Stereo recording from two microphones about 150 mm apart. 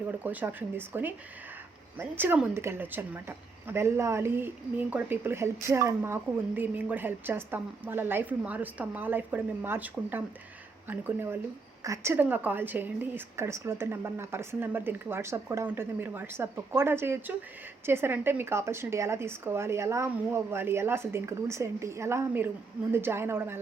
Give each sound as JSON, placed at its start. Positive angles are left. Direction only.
{"t": 0.2, "sound": "a woman's voice", "side_deg": -10}